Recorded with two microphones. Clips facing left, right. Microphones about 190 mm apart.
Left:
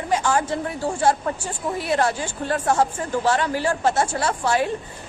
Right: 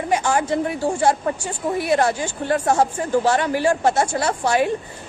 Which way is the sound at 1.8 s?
15° right (ahead or behind).